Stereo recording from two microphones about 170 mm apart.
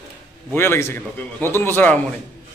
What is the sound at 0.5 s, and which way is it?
A man's voice, 15° left (ahead or behind).